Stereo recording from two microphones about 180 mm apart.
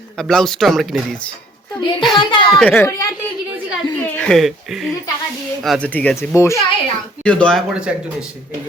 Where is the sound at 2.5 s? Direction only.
10° left (ahead or behind).